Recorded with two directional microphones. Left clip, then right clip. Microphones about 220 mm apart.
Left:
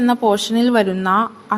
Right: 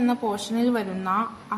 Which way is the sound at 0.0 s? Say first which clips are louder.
Left 9 dB; 35° left (ahead or behind).